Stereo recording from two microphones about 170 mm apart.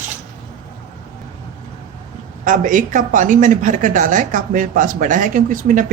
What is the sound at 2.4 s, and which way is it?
A woman's voice, 50° right (ahead or behind).